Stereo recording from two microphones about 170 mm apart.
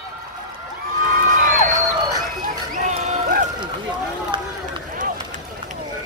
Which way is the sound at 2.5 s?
45° right (ahead or behind).